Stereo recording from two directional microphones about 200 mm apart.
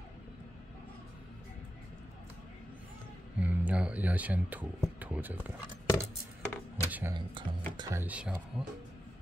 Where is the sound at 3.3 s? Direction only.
5° right (ahead or behind).